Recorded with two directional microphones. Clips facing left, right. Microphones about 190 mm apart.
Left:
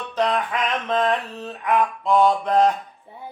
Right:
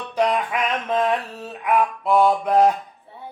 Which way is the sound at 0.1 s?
10° right (ahead or behind).